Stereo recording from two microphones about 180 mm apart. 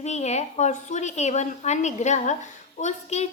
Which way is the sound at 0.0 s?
40° left (ahead or behind).